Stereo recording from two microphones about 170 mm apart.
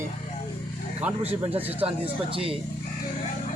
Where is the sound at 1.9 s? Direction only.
35° right (ahead or behind).